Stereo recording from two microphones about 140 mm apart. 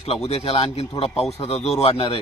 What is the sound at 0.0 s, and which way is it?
Speech, 45° left (ahead or behind).